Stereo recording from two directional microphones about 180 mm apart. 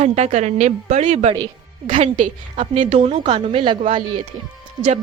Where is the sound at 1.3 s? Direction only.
25° right (ahead or behind).